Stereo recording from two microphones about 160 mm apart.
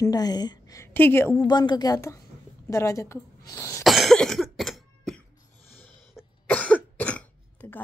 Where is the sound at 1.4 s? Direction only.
25° left (ahead or behind).